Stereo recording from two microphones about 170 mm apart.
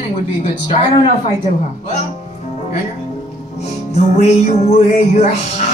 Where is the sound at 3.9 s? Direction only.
40° left (ahead or behind).